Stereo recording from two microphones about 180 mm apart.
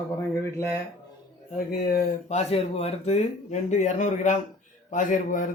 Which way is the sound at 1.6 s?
60° left (ahead or behind).